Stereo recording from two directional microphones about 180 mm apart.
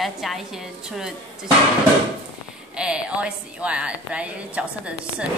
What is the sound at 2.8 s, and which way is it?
A woman's voice, 5° right (ahead or behind).